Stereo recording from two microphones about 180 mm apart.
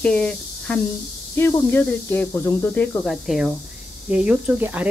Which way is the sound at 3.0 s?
Centre (ahead or behind).